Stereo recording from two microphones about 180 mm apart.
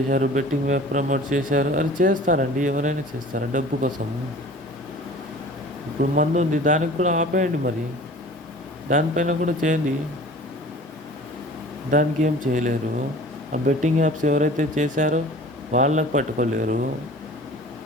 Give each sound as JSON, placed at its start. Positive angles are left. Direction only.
{"t": 0.1, "sound": "speech", "side_deg": -45}
{"t": 6.1, "sound": "speech", "side_deg": -40}
{"t": 8.9, "sound": "speech", "side_deg": -45}
{"t": 11.9, "sound": "speech", "side_deg": -45}